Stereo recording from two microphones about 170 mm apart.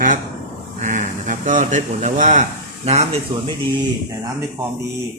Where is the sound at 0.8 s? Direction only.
45° right (ahead or behind).